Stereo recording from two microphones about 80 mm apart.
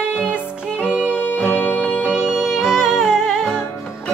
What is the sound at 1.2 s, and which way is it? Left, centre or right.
Music, left.